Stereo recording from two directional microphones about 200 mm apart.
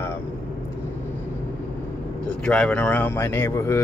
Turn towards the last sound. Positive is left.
turn(degrees=15)  # may be behind; listen again after turning